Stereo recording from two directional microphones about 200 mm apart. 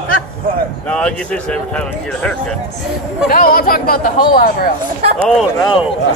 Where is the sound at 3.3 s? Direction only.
45° left (ahead or behind).